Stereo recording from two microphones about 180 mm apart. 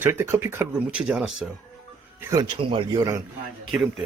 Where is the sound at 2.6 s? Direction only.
30° right (ahead or behind).